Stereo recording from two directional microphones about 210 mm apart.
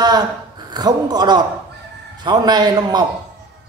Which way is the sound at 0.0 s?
20° right (ahead or behind).